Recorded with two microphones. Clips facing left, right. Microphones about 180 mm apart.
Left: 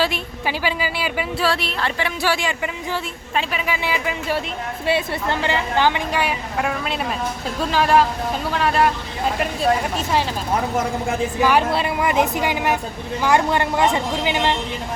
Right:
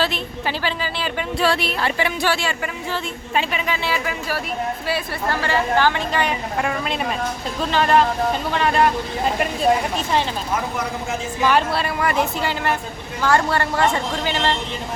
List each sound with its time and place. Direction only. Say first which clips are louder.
0.0 s a woman's voice: left 1 dB; 10° left (ahead or behind)
2.2 s a woman's voice: even; 15° left (ahead or behind)
3.3 s speech: right 1 dB; centre (ahead or behind)
3.8 s a woman's voice: left 1 dB; 20° left (ahead or behind); by 9.5 s centre (ahead or behind)
11.4 s a woman's voice: even; 15° left (ahead or behind)